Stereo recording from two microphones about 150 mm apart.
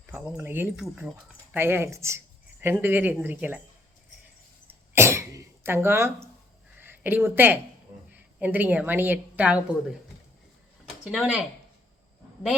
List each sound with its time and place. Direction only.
0.1 s speech: 10° right (ahead or behind)
4.9 s cough: 20° right (ahead or behind)
6.7 s a woman's voice: 15° right (ahead or behind)
10.8 s speech: 5° right (ahead or behind)